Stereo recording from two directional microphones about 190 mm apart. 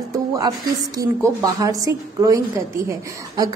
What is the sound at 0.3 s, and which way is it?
A woman's voice, 20° right (ahead or behind).